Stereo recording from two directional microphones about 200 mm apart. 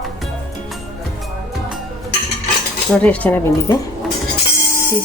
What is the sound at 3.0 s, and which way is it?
Speech, 10° left (ahead or behind).